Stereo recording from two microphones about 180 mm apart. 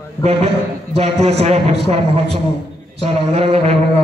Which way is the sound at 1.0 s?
35° right (ahead or behind).